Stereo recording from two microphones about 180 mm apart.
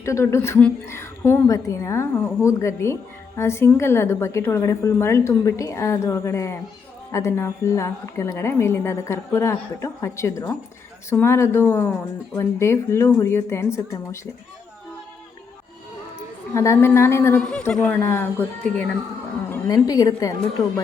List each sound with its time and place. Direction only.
0.0 s a woman's voice: 15° left (ahead or behind)
16.6 s a woman's voice: 15° left (ahead or behind)